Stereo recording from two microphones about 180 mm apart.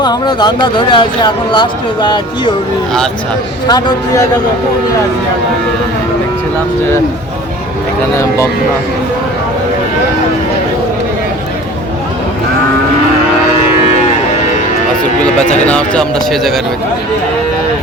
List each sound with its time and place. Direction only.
0.0 s speech: 25° left (ahead or behind)
3.7 s speech: 20° left (ahead or behind)
15.6 s speech: 5° left (ahead or behind)